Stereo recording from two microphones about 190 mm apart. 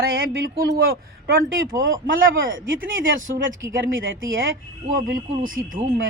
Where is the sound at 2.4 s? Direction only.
85° right.